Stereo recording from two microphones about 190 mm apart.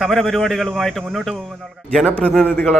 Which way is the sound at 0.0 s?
Centre (ahead or behind).